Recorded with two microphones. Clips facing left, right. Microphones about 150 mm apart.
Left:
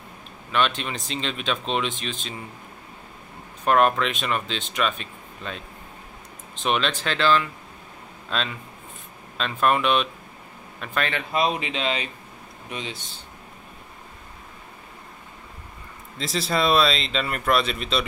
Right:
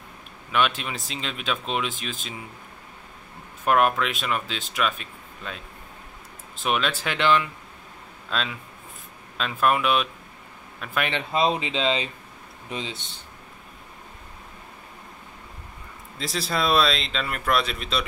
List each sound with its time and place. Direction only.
0.5 s speech: 10° right (ahead or behind)
3.6 s speech: 5° right (ahead or behind)
6.6 s speech: 5° right (ahead or behind)
8.3 s speech: centre (ahead or behind)
11.1 s speech: 25° right (ahead or behind)
16.2 s speech: centre (ahead or behind)